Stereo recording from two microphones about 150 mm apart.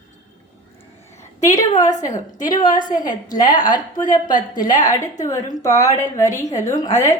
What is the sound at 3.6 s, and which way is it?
Speech, 65° left (ahead or behind).